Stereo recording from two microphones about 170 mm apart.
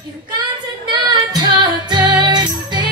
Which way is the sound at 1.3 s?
25° right (ahead or behind).